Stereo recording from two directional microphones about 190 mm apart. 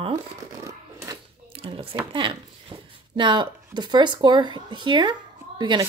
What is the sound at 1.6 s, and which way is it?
Speech, 30° right (ahead or behind).